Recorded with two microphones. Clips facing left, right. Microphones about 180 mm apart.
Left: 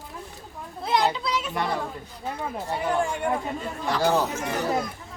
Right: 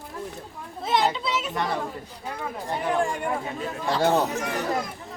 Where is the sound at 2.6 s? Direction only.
Centre (ahead or behind).